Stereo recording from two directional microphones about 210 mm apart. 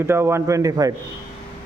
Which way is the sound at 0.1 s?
10° right (ahead or behind).